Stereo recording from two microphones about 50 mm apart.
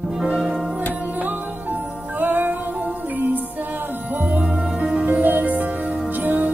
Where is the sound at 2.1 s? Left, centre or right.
Right.